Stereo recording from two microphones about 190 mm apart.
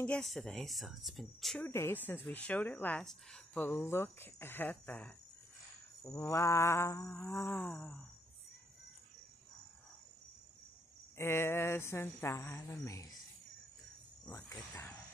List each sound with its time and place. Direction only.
0.0 s speech: 5° left (ahead or behind)
11.1 s speech: 15° left (ahead or behind)
14.2 s cricket: 15° left (ahead or behind)